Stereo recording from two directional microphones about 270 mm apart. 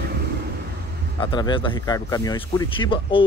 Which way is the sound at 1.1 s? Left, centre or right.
Centre.